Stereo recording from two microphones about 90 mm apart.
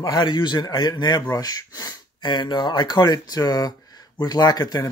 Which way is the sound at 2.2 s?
60° left (ahead or behind).